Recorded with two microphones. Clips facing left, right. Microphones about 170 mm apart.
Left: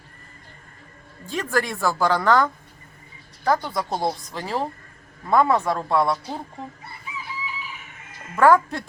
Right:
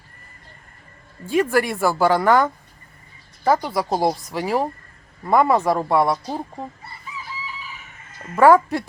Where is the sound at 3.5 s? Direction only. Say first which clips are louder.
Right 4 dB; 5° right (ahead or behind).